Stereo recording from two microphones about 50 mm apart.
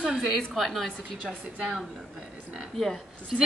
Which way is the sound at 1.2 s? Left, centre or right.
Right.